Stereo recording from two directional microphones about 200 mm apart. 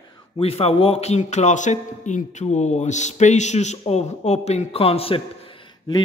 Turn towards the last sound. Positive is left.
turn(degrees=25)  # may be behind; listen again after turning